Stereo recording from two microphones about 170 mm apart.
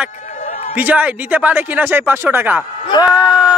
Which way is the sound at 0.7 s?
10° right (ahead or behind).